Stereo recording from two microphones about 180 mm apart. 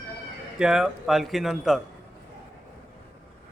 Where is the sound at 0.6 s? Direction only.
5° right (ahead or behind).